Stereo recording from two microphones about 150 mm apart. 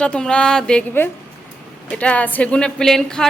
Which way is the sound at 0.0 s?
5° left (ahead or behind).